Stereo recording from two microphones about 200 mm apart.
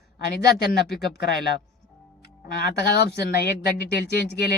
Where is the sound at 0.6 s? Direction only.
55° left (ahead or behind).